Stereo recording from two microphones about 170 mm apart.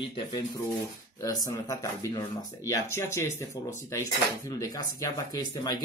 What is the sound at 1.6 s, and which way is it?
Speech, 20° left (ahead or behind).